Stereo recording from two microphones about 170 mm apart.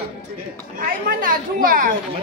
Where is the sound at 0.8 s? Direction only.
55° right (ahead or behind).